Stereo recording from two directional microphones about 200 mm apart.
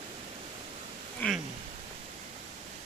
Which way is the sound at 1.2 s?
5° left (ahead or behind).